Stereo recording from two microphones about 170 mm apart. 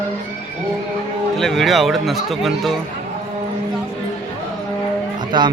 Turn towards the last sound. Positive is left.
turn(degrees=-25)  # may be behind; listen again after turning